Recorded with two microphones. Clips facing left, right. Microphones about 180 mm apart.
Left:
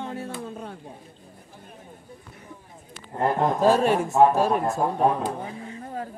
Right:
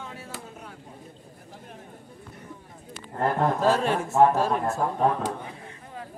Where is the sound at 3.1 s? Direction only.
15° left (ahead or behind).